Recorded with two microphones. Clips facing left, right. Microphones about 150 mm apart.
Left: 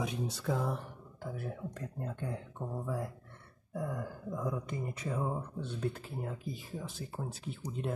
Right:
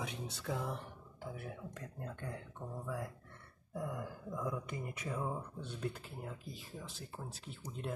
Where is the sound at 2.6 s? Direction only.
25° left (ahead or behind).